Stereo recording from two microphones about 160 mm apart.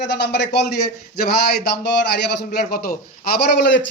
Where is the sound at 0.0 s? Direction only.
90° left.